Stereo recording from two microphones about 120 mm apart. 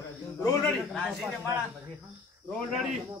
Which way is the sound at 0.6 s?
5° left (ahead or behind).